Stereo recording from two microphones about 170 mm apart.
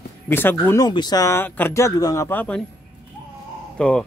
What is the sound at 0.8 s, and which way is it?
Speech, 25° left (ahead or behind).